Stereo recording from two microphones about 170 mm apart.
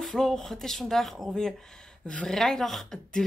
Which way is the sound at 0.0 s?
Centre (ahead or behind).